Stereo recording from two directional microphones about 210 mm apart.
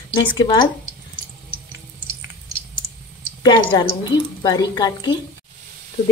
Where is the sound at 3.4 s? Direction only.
20° left (ahead or behind).